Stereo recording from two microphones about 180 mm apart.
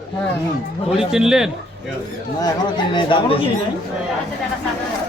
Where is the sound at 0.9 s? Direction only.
5° right (ahead or behind).